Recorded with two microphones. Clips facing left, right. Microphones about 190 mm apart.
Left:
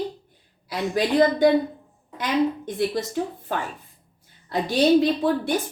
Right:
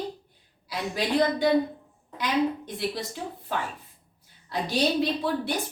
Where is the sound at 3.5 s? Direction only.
55° left (ahead or behind).